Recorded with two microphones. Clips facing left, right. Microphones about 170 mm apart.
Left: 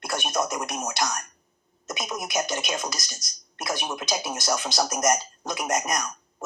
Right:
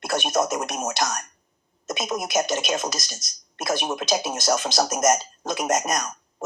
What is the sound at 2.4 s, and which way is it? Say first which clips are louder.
Speech: right 4 dB; 25° right (ahead or behind).